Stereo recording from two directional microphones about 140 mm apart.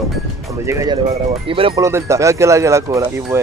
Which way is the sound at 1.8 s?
20° right (ahead or behind).